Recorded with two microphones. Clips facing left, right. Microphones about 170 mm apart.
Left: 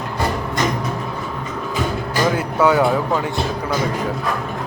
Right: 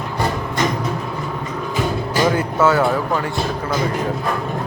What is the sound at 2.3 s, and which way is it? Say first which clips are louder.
Music: even; 15° left (ahead or behind).